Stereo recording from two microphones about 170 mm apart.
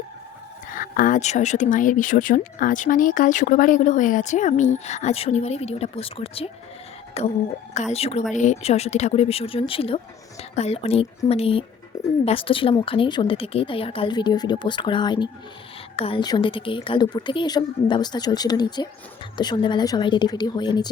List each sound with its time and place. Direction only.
0.7 s a woman's voice: 50° left (ahead or behind); by 20.9 s 25° left (ahead or behind)